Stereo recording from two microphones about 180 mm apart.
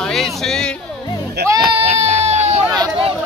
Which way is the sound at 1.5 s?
30° right (ahead or behind).